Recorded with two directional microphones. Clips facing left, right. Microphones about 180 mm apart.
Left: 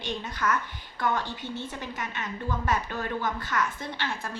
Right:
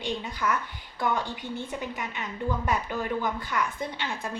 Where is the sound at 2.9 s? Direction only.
15° right (ahead or behind).